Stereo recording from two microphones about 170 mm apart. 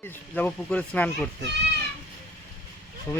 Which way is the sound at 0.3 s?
10° left (ahead or behind).